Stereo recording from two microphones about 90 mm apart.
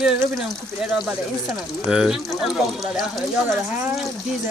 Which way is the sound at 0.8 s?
5° right (ahead or behind).